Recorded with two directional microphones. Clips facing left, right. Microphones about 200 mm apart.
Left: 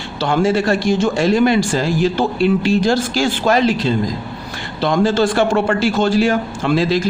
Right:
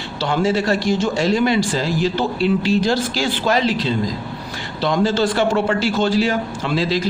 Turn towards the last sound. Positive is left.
turn(degrees=50)  # may be behind; listen again after turning